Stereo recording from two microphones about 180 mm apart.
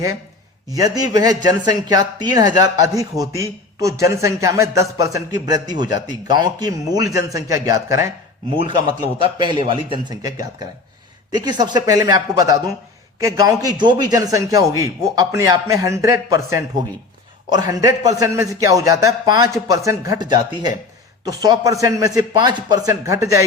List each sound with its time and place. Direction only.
0.7 s speech: 20° right (ahead or behind)